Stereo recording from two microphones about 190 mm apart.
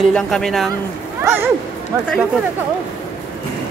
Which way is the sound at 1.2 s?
15° right (ahead or behind).